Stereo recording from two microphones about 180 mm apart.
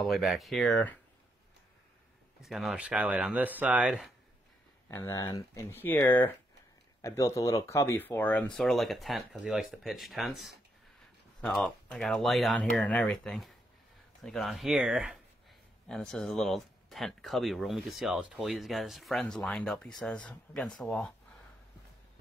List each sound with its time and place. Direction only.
0.0 s speech: centre (ahead or behind)
2.4 s speech: centre (ahead or behind)
4.8 s speech: 15° left (ahead or behind)